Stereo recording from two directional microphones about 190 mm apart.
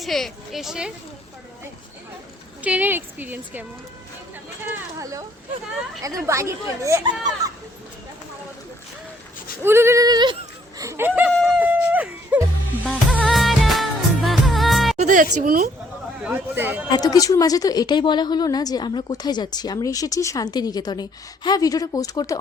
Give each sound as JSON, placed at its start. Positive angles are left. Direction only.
{"t": 0.0, "sound": "a woman's voice", "side_deg": 0}
{"t": 2.6, "sound": "speech", "side_deg": -10}
{"t": 9.6, "sound": "speech", "side_deg": -15}
{"t": 11.3, "sound": "a sound", "side_deg": 5}
{"t": 11.6, "sound": "a sound", "side_deg": -10}
{"t": 13.1, "sound": "music", "side_deg": 0}
{"t": 14.9, "sound": "music", "side_deg": -45}
{"t": 15.4, "sound": "speech", "side_deg": -45}
{"t": 16.2, "sound": "speech", "side_deg": -10}
{"t": 17.0, "sound": "a woman's voice", "side_deg": 20}